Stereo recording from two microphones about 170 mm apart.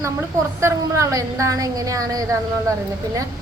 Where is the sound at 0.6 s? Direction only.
15° right (ahead or behind).